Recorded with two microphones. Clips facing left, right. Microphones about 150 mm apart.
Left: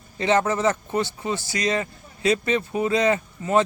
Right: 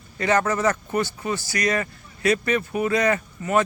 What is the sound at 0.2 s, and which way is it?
A man's voice, 25° left (ahead or behind).